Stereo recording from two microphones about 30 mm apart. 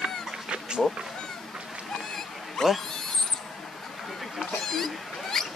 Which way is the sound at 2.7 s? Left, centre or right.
Centre.